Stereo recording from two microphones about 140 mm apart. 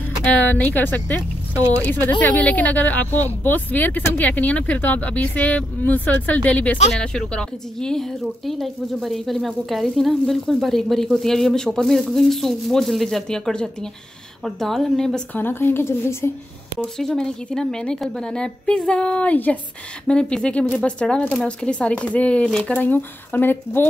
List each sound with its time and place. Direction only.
0.4 s a woman's voice: 10° left (ahead or behind)
15.3 s speech: 15° left (ahead or behind)
17.0 s speech: 5° left (ahead or behind)